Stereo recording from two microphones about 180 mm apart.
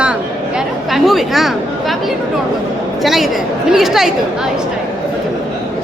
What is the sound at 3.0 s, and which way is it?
Speech, centre (ahead or behind).